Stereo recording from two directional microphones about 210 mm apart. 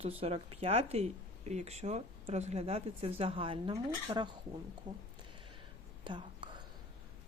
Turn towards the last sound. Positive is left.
turn(degrees=-20)  # may be behind; listen again after turning